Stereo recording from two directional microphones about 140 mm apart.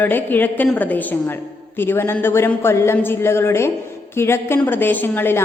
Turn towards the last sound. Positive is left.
turn(degrees=15)  # may be behind; listen again after turning